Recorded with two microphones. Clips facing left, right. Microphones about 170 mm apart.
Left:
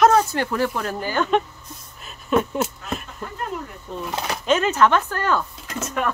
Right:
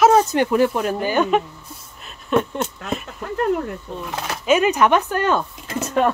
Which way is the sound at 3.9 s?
Centre (ahead or behind).